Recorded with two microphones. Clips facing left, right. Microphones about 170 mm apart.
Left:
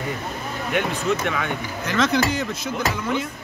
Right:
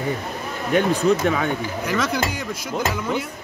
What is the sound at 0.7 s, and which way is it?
Speech, 35° right (ahead or behind).